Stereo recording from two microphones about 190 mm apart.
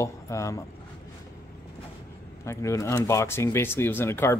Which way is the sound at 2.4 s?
15° left (ahead or behind).